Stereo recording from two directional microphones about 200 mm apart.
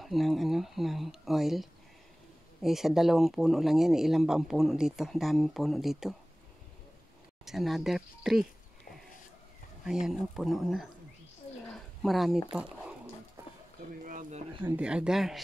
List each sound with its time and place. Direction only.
0.0 s speech: centre (ahead or behind)
7.4 s speech: centre (ahead or behind)
9.8 s speech: centre (ahead or behind)
11.7 s a sound: centre (ahead or behind)
12.5 s speech: 5° right (ahead or behind)
13.4 s a sound: 10° right (ahead or behind)
14.0 s speech: 40° right (ahead or behind)
14.6 s speech: 5° right (ahead or behind)